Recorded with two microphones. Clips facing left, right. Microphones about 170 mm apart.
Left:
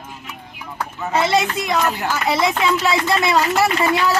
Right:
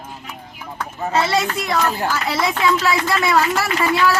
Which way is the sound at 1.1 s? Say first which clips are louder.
Left 1 dB; 15° left (ahead or behind).